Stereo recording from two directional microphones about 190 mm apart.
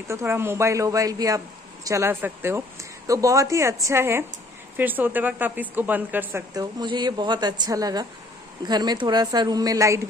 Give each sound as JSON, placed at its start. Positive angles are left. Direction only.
{"t": 0.1, "sound": "speech", "side_deg": -15}
{"t": 6.5, "sound": "speech", "side_deg": -20}